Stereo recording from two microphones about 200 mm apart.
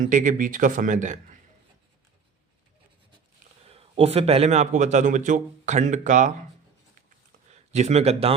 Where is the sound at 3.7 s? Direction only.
30° right (ahead or behind).